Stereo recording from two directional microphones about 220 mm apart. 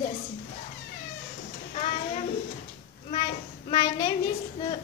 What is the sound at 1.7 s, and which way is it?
Child singing, 30° left (ahead or behind).